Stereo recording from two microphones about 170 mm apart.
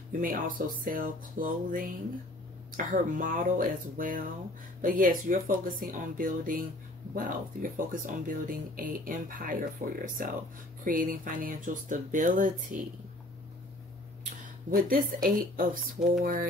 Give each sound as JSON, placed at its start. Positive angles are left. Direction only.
{"t": 0.2, "sound": "speech", "side_deg": -55}
{"t": 14.7, "sound": "speech", "side_deg": -55}